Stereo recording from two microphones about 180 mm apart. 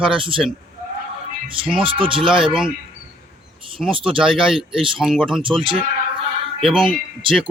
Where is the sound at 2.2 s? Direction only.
5° right (ahead or behind).